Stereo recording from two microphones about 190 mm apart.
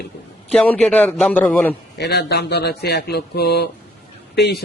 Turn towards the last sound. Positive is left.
turn(degrees=60)  # may be behind; listen again after turning